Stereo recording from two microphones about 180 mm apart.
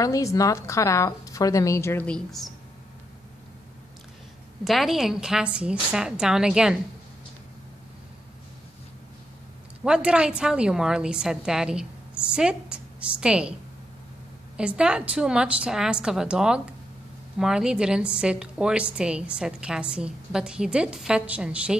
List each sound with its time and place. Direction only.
0.0 s a woman's voice: 20° left (ahead or behind); by 2.5 s centre (ahead or behind)
4.6 s a woman's voice: centre (ahead or behind)
9.8 s a woman's voice: 5° right (ahead or behind)
14.6 s a woman's voice: 5° right (ahead or behind)